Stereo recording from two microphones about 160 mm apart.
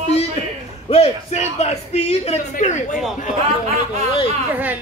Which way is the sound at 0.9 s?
40° left (ahead or behind).